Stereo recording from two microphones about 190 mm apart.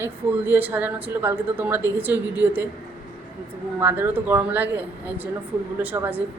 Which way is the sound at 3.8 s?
10° right (ahead or behind).